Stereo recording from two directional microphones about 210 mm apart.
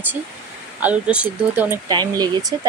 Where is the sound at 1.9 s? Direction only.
20° right (ahead or behind).